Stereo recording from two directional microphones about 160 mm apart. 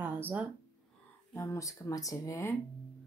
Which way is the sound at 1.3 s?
20° left (ahead or behind).